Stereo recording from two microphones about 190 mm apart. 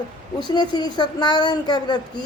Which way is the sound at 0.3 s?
20° left (ahead or behind).